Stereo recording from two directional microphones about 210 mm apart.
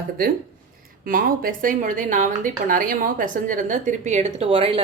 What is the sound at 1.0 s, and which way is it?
Speech, 45° right (ahead or behind).